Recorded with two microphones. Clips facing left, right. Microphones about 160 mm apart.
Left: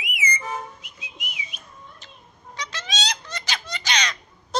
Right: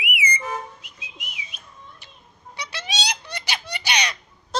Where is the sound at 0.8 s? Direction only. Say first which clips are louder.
Left 2 dB; centre (ahead or behind).